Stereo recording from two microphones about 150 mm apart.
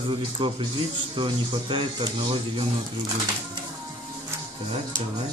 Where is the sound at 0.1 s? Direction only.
35° right (ahead or behind).